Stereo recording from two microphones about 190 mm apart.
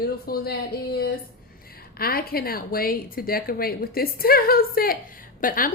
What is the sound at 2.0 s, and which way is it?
A woman's voice, 50° left (ahead or behind).